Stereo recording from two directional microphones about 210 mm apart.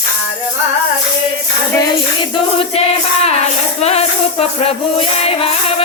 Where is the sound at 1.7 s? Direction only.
25° left (ahead or behind).